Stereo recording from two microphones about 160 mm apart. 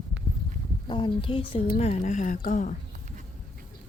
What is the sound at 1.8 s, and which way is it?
Speech, 50° left (ahead or behind).